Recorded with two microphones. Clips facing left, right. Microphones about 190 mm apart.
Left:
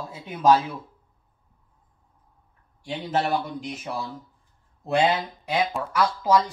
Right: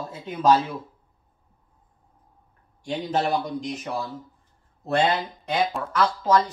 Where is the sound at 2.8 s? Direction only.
Centre (ahead or behind).